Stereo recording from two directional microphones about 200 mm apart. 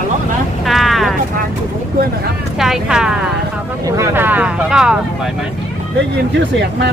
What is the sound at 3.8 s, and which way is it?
Speech, 15° right (ahead or behind).